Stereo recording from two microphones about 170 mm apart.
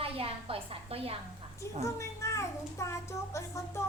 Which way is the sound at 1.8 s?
15° left (ahead or behind).